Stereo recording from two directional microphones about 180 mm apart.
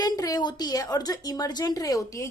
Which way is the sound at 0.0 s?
20° left (ahead or behind).